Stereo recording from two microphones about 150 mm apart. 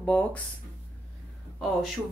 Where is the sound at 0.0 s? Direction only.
10° left (ahead or behind).